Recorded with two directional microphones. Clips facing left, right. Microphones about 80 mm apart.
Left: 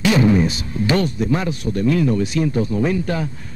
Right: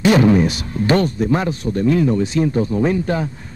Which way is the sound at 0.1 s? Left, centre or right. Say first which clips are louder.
Right 2 dB; right.